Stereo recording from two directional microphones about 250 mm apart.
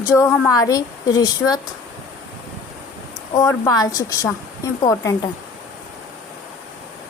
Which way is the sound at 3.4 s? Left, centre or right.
Centre.